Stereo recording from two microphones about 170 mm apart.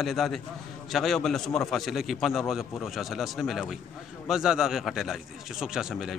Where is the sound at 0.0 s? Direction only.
Centre (ahead or behind).